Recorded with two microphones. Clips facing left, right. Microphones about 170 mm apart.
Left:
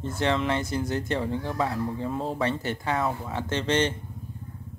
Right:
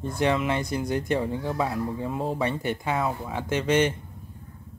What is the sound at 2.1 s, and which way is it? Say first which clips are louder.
Speech: right 1 dB; 5° right (ahead or behind).